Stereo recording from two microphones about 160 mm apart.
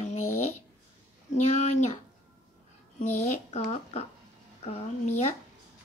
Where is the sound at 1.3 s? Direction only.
45° left (ahead or behind).